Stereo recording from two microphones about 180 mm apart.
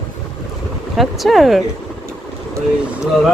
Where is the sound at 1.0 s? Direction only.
Centre (ahead or behind).